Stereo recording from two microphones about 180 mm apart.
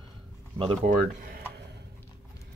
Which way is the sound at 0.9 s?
45° right (ahead or behind).